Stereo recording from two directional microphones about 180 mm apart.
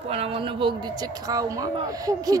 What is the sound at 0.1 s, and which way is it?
A woman's voice, 30° right (ahead or behind).